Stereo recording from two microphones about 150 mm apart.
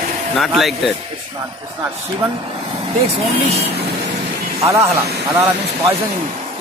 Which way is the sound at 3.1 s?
45° right (ahead or behind).